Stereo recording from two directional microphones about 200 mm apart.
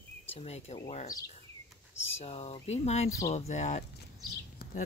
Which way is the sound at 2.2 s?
30° left (ahead or behind).